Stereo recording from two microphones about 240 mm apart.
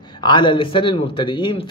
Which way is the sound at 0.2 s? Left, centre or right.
Centre.